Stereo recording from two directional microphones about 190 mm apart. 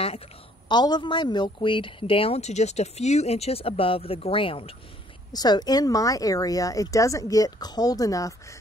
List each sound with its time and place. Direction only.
0.7 s speech: 25° left (ahead or behind)